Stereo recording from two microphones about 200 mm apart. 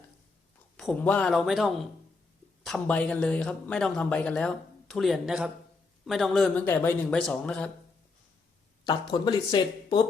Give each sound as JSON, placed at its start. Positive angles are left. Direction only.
{"t": 0.8, "sound": "speech", "side_deg": 5}
{"t": 9.1, "sound": "speech", "side_deg": 20}